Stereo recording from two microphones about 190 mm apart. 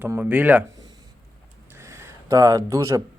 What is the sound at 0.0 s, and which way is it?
Speech, 10° right (ahead or behind).